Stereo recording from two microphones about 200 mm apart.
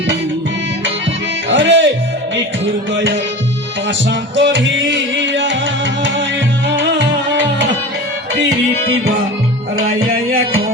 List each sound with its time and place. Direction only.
1.5 s music: 65° right (ahead or behind)
2.9 s tabla: 65° right (ahead or behind)
4.4 s music: 65° right (ahead or behind)